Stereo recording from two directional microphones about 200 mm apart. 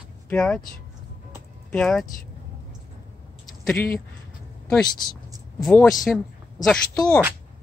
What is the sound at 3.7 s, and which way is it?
Speech, 10° left (ahead or behind).